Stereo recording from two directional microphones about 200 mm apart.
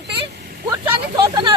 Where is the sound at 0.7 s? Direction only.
20° right (ahead or behind).